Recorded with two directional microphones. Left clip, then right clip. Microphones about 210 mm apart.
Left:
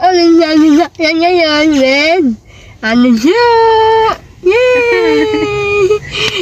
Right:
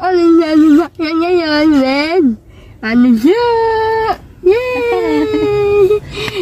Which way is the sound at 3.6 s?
25° left (ahead or behind).